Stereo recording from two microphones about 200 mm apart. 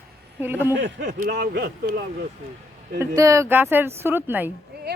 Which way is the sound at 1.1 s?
50° right (ahead or behind).